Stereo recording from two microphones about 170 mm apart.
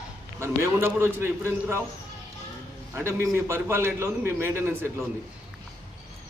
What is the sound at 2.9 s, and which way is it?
A man's voice, 15° right (ahead or behind).